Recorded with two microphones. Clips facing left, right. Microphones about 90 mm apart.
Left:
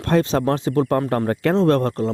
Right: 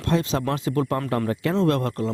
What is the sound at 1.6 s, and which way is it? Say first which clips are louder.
Speech: left 5 dB; 35° left (ahead or behind).